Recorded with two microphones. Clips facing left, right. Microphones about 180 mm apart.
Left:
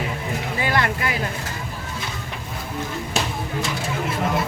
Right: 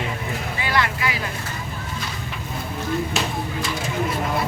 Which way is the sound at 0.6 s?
50° left (ahead or behind).